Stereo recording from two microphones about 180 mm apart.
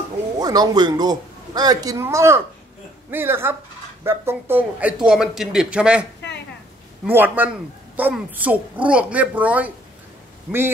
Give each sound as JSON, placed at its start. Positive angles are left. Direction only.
{"t": 0.4, "sound": "a man's voice", "side_deg": -20}
{"t": 7.1, "sound": "a woman's voice", "side_deg": -10}